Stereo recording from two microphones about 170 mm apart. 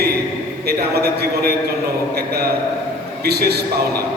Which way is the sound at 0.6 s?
70° right (ahead or behind).